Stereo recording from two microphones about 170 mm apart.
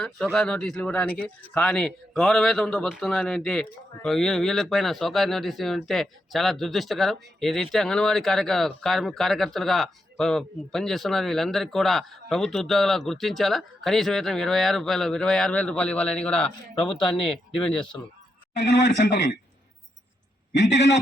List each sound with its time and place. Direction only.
0.0 s speech: 5° left (ahead or behind)
17.5 s speech: 5° left (ahead or behind)
18.5 s speech: 90° left
20.5 s a man's voice: 90° left